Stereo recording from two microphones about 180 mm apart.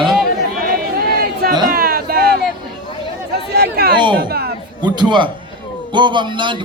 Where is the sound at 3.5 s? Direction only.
65° right (ahead or behind).